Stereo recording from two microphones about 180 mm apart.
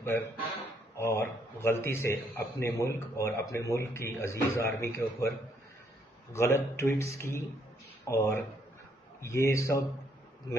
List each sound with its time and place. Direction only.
0.0 s a man's voice: 10° left (ahead or behind)
6.3 s a man's voice: 15° left (ahead or behind)